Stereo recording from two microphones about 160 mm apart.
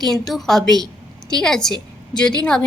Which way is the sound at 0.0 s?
Centre (ahead or behind).